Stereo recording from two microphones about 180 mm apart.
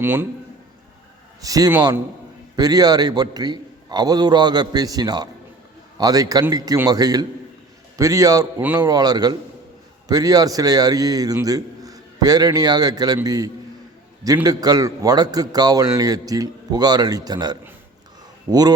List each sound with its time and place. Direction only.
0.0 s a man's voice: 10° right (ahead or behind)
1.4 s a man's voice: 20° right (ahead or behind)